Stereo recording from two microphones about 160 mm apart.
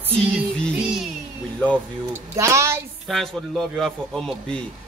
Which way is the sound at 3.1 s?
Centre (ahead or behind).